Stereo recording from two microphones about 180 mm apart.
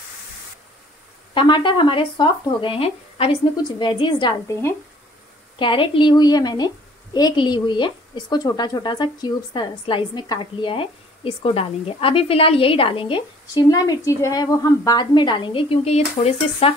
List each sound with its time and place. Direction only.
1.3 s a woman's voice: 25° left (ahead or behind)
5.6 s a woman's voice: 25° left (ahead or behind)